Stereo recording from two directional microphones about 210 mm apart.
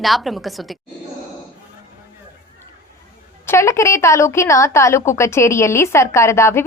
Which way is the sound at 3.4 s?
10° left (ahead or behind).